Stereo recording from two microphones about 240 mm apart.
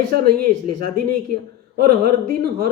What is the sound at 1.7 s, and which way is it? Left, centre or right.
Speech, right.